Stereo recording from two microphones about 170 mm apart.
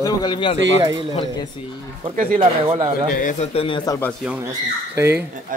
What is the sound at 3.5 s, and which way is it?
Speech, 35° left (ahead or behind).